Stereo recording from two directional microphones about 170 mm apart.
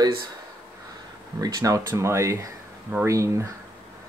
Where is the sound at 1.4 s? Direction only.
20° right (ahead or behind).